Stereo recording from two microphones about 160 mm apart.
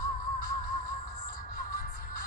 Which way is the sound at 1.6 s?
60° left (ahead or behind).